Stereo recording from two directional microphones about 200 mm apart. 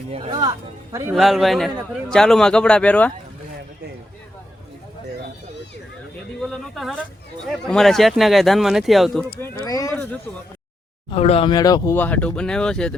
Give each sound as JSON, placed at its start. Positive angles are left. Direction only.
{"t": 0.3, "sound": "speech", "side_deg": -20}
{"t": 1.1, "sound": "speech", "side_deg": 0}
{"t": 6.4, "sound": "a sound", "side_deg": 0}
{"t": 7.7, "sound": "speech", "side_deg": 0}
{"t": 9.4, "sound": "a sound", "side_deg": 15}
{"t": 11.1, "sound": "speech", "side_deg": 30}